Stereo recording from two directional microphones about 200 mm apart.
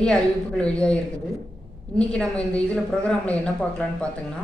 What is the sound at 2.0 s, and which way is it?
A woman's voice, 5° left (ahead or behind).